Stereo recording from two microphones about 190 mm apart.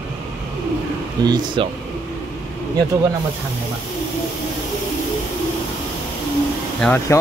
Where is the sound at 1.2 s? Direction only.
25° right (ahead or behind).